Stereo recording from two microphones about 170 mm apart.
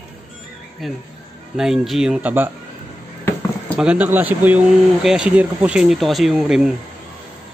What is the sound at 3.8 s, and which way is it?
Speech, 10° right (ahead or behind).